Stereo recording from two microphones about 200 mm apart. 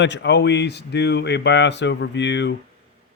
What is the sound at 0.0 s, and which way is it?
Speech, 60° left (ahead or behind).